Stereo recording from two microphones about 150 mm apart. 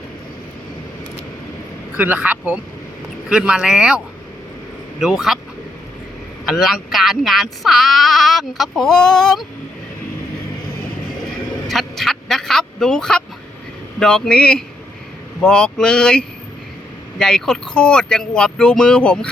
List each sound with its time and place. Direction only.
2.0 s speech: 10° right (ahead or behind)
6.5 s speech: centre (ahead or behind)
11.7 s a sound: centre (ahead or behind)
14.0 s speech: 5° left (ahead or behind)